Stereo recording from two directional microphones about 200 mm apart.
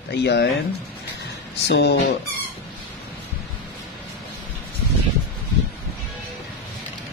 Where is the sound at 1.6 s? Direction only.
55° left (ahead or behind).